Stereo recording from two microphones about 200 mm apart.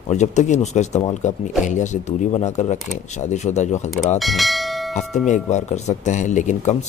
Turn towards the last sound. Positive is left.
turn(degrees=35)  # may be behind; listen again after turning